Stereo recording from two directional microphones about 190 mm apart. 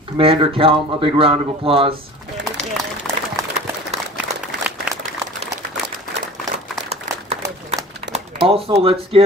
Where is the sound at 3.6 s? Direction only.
35° right (ahead or behind).